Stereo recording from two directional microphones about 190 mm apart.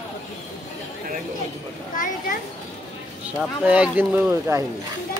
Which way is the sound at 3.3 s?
5° right (ahead or behind).